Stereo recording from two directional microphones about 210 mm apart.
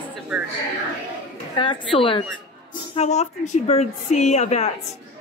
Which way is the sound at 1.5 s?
25° left (ahead or behind).